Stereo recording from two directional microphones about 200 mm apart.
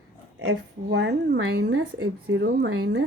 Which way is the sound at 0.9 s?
60° right (ahead or behind).